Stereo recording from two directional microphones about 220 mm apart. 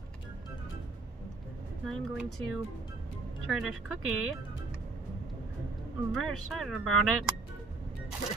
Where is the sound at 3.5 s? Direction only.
Centre (ahead or behind).